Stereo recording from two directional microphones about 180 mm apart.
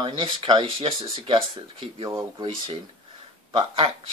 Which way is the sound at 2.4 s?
30° right (ahead or behind).